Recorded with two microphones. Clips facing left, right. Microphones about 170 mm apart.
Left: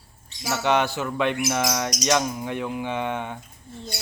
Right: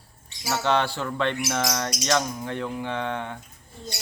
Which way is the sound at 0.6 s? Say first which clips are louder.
Left 2 dB; 15° left (ahead or behind).